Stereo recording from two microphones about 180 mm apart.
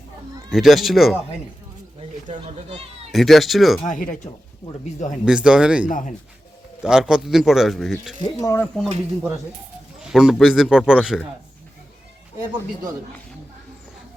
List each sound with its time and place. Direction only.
0.5 s a man's voice: centre (ahead or behind)
3.1 s a man's voice: centre (ahead or behind)
3.8 s speech: 45° left (ahead or behind)
5.2 s a man's voice: 5° right (ahead or behind)
5.9 s speech: 45° left (ahead or behind)
6.8 s a man's voice: 5° right (ahead or behind)
8.2 s speech: 20° left (ahead or behind)
8.6 s a man's voice: centre (ahead or behind)
10.0 s a man's voice: 5° right (ahead or behind)